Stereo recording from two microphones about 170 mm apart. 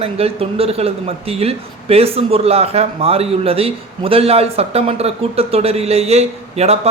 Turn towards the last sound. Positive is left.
turn(degrees=-40)  # may be behind; listen again after turning